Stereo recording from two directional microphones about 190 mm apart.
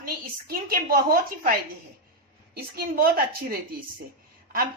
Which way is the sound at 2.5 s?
50° right (ahead or behind).